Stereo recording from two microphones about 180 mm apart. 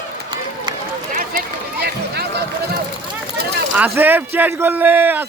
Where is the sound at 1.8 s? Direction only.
65° right (ahead or behind).